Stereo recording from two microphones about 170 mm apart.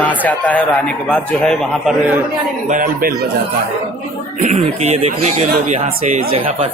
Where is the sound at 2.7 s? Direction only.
55° right (ahead or behind).